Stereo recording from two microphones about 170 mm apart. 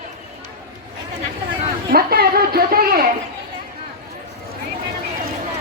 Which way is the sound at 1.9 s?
65° right (ahead or behind).